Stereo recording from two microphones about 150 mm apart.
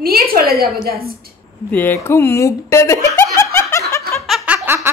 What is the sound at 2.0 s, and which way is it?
Snicker, 15° left (ahead or behind).